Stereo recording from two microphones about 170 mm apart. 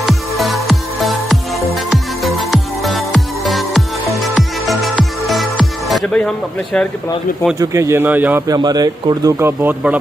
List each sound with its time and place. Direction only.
0.0 s music: centre (ahead or behind)
7.5 s speech: 20° right (ahead or behind)
8.5 s speech: 25° right (ahead or behind)